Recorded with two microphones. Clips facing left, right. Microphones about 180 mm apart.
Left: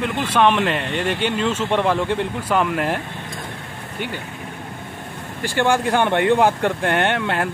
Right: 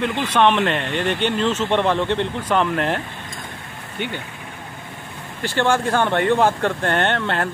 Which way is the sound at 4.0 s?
5° left (ahead or behind).